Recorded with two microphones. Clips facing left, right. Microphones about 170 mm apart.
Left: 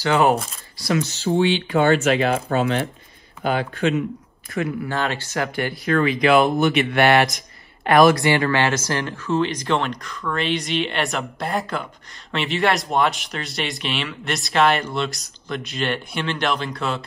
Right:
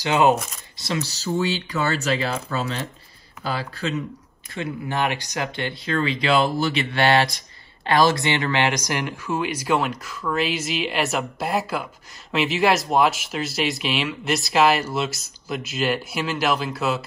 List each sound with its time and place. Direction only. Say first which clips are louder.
0.0 s speech: left 1 dB; 20° right (ahead or behind)
1.0 s speech: left 4 dB; 40° right (ahead or behind)
3.4 s speech: left 6 dB; 35° right (ahead or behind)
4.6 s speech: left 2 dB; 20° right (ahead or behind)